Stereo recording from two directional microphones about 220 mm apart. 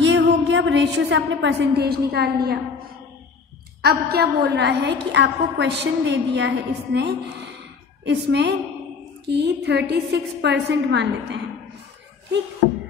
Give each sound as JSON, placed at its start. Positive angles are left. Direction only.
{"t": 0.0, "sound": "a woman's voice", "side_deg": -55}
{"t": 3.8, "sound": "a woman's voice", "side_deg": -45}